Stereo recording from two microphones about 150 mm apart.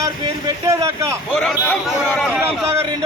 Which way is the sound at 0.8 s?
20° right (ahead or behind).